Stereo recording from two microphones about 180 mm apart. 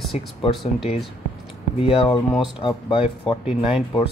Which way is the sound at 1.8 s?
30° left (ahead or behind).